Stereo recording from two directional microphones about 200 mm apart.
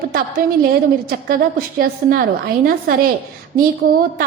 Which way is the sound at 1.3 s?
45° right (ahead or behind).